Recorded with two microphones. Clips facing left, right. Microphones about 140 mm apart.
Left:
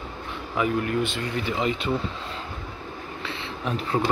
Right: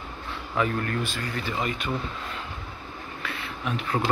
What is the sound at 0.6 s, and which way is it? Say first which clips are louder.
Speech: left 3 dB; 15° left (ahead or behind).